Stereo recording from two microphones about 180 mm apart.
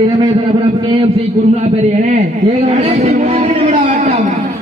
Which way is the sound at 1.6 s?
40° right (ahead or behind).